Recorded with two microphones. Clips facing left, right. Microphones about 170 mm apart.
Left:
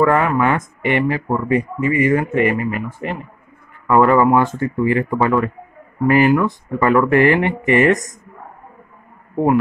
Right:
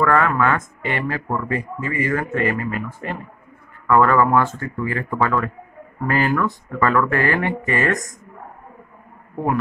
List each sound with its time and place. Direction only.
0.0 s speech: 20° left (ahead or behind)